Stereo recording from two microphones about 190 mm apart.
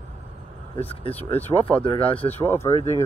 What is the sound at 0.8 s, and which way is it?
Speech, 30° left (ahead or behind).